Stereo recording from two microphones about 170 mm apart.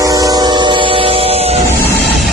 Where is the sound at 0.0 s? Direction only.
20° right (ahead or behind); by 1.6 s 35° right (ahead or behind).